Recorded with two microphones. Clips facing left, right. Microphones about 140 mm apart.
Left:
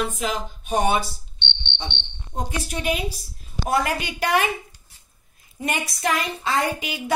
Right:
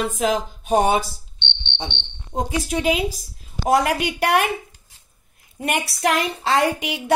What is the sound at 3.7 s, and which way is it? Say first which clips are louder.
Speech: right 5 dB; 70° right (ahead or behind).